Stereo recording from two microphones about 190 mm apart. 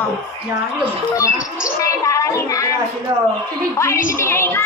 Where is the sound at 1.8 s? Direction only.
15° left (ahead or behind).